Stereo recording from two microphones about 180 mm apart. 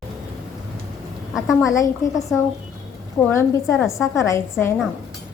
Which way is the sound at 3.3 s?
15° left (ahead or behind).